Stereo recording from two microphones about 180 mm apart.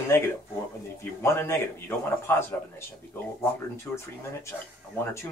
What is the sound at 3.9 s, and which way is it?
Speech, 15° left (ahead or behind).